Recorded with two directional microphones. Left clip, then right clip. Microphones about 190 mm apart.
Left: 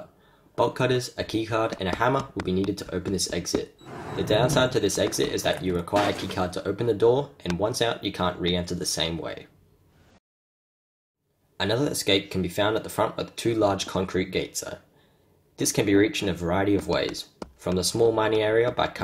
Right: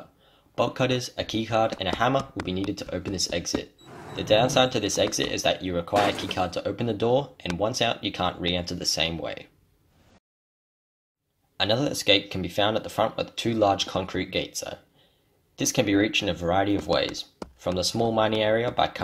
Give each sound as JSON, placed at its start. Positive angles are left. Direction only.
{"t": 0.6, "sound": "speech", "side_deg": -25}
{"t": 2.4, "sound": "speech", "side_deg": 0}
{"t": 2.7, "sound": "speech", "side_deg": -25}
{"t": 3.8, "sound": "a sound", "side_deg": -40}
{"t": 4.1, "sound": "speech", "side_deg": -25}
{"t": 11.5, "sound": "speech", "side_deg": -25}
{"t": 17.4, "sound": "a sound", "side_deg": 0}
{"t": 17.7, "sound": "speech", "side_deg": -25}